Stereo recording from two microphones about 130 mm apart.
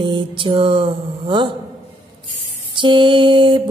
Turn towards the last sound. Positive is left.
turn(degrees=-40)  # may be behind; listen again after turning